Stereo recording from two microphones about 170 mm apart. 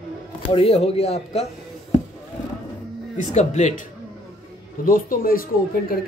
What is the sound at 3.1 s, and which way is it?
Speech, 45° left (ahead or behind).